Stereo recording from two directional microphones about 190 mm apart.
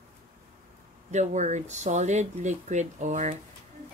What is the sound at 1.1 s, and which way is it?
Speech, 40° right (ahead or behind).